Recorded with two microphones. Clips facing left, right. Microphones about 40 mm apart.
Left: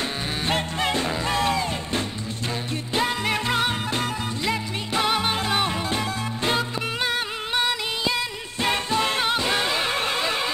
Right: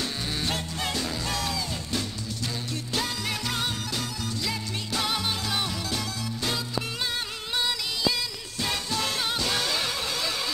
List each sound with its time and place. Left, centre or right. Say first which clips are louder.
0.0 s music: left 3 dB; left